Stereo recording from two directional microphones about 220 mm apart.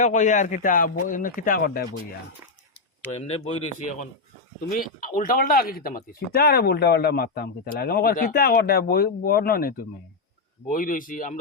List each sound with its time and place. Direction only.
0.0 s speech: 35° left (ahead or behind)
3.2 s speech: 25° left (ahead or behind)